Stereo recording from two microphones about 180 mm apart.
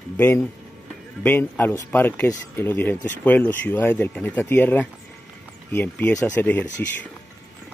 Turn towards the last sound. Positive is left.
turn(degrees=10)  # may be behind; listen again after turning